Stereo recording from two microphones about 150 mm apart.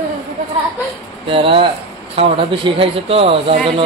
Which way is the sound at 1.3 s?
40° right (ahead or behind).